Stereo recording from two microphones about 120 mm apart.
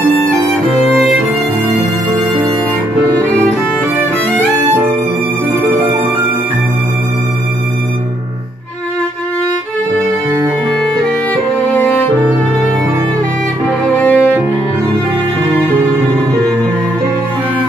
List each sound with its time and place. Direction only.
11.7 s music: 15° left (ahead or behind)
13.9 s music: 15° left (ahead or behind)